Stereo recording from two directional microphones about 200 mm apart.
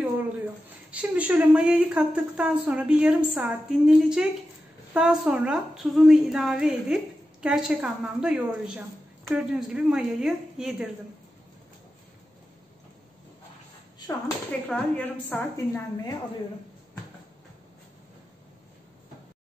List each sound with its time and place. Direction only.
1.1 s a woman's voice: 5° right (ahead or behind)
13.9 s a sound: 15° left (ahead or behind)
14.7 s a woman's voice: 10° left (ahead or behind)